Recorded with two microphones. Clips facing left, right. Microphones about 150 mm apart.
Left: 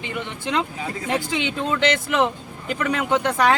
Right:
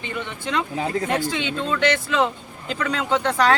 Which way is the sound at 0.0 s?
15° left (ahead or behind).